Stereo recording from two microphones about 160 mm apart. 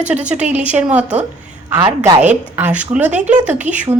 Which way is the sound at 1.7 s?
25° right (ahead or behind).